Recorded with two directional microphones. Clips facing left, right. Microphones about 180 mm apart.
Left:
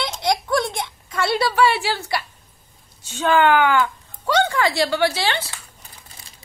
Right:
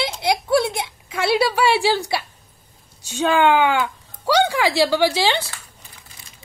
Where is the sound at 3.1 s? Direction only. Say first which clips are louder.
Even; 15° right (ahead or behind).